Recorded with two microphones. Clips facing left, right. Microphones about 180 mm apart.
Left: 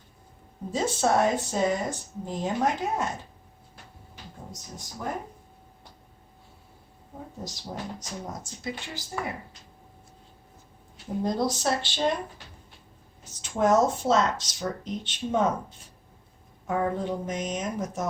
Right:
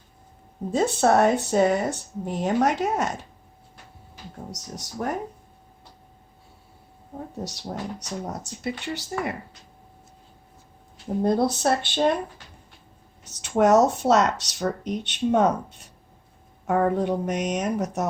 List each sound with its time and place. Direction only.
0.7 s speech: 60° right (ahead or behind); by 3.1 s 80° right
4.5 s speech: 75° right (ahead or behind)
7.9 s speech: 70° right (ahead or behind)
11.2 s speech: 60° right (ahead or behind)
13.2 s speech: 70° right (ahead or behind)